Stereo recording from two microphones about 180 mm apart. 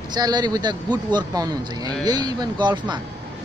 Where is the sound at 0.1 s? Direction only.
20° right (ahead or behind).